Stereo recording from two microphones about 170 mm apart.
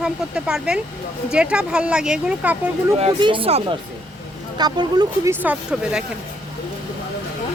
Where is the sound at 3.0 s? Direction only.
35° right (ahead or behind).